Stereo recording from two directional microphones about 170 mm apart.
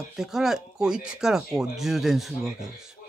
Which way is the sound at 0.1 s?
5° right (ahead or behind).